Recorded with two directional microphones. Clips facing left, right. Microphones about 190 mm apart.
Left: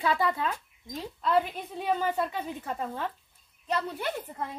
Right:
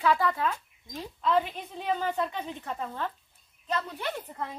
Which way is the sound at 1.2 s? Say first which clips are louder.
Even; 5° left (ahead or behind).